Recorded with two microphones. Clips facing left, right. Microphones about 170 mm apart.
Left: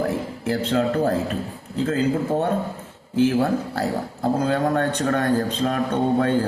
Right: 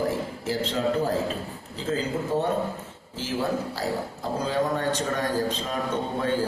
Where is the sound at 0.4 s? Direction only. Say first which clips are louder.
Left 5 dB; 60° left (ahead or behind).